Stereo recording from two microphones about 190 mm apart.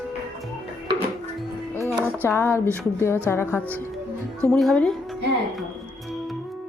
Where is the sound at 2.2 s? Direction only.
10° left (ahead or behind).